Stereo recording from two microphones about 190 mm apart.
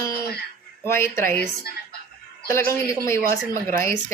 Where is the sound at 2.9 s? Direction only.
15° left (ahead or behind).